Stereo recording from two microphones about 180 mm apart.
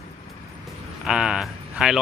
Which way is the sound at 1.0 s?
5° right (ahead or behind).